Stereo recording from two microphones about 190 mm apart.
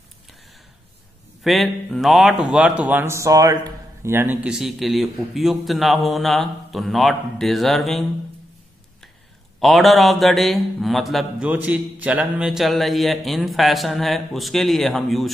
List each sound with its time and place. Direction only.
1.4 s a man's voice: centre (ahead or behind)
9.6 s a man's voice: centre (ahead or behind)